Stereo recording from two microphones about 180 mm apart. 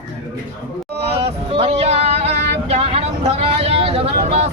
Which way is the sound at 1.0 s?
30° right (ahead or behind).